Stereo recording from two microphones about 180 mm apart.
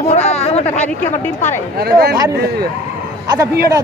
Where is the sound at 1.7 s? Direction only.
60° right (ahead or behind).